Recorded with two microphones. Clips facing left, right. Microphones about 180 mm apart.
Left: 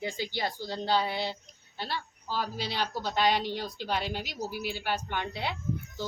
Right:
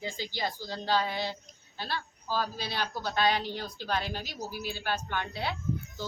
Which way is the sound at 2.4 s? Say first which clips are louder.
Left 3 dB; 15° left (ahead or behind).